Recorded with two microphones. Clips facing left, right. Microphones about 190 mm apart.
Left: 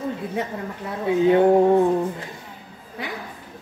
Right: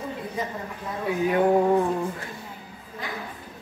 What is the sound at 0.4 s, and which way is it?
Speech, 65° left (ahead or behind).